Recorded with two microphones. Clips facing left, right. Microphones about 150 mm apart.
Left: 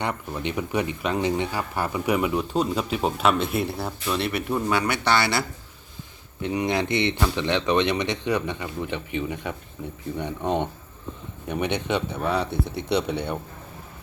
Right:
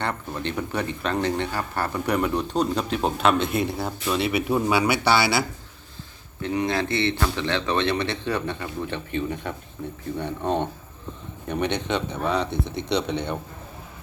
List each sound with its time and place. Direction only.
0.0 s speech: 10° left (ahead or behind)
6.4 s speech: 15° left (ahead or behind)